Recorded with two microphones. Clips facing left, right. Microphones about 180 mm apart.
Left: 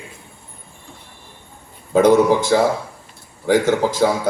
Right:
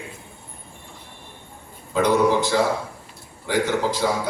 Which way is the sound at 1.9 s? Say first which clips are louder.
Left 6 dB; 45° left (ahead or behind).